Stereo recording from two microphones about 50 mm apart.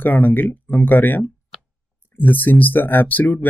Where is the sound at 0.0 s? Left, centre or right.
Left.